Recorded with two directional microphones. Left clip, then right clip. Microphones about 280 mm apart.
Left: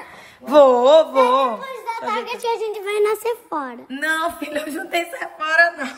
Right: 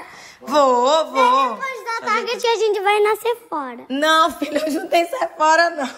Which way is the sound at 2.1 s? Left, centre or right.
Right.